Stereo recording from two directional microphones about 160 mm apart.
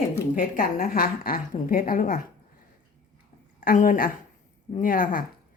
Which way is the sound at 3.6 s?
60° left (ahead or behind).